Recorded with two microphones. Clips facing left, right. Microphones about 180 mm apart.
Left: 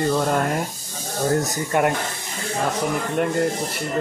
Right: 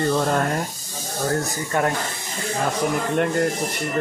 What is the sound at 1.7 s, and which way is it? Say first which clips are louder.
Speech: left 2 dB; 15° left (ahead or behind).